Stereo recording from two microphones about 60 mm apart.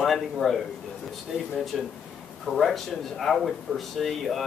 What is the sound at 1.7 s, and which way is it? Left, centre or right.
Speech, centre.